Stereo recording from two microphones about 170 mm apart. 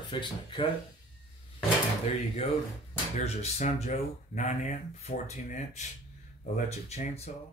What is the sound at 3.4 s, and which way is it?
Speech, 40° left (ahead or behind).